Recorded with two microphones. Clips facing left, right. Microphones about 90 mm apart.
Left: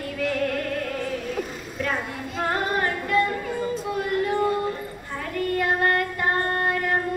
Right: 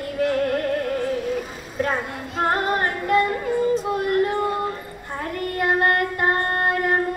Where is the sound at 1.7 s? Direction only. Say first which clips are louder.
Right 4 dB; 35° right (ahead or behind).